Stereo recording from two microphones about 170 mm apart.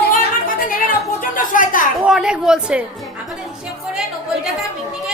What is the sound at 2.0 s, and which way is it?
Speech, 5° right (ahead or behind).